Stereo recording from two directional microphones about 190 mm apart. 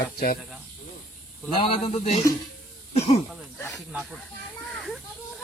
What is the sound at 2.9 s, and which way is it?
Throat clearing, 35° left (ahead or behind).